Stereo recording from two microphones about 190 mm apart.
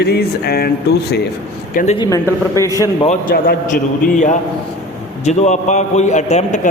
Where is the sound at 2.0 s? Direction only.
20° left (ahead or behind).